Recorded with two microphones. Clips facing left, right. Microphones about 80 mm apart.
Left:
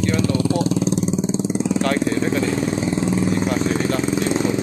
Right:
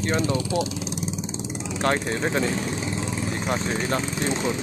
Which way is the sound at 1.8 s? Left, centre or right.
Right.